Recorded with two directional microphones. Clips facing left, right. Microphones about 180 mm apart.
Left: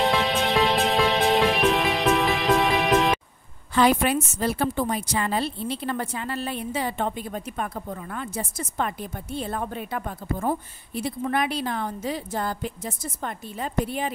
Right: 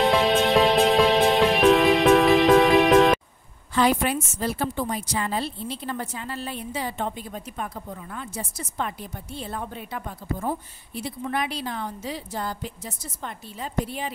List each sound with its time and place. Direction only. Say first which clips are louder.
0.0 s music: right 3 dB; centre (ahead or behind)
3.7 s a woman's voice: left 2 dB; 65° left (ahead or behind)